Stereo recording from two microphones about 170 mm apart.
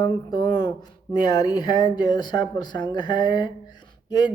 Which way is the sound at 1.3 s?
25° left (ahead or behind).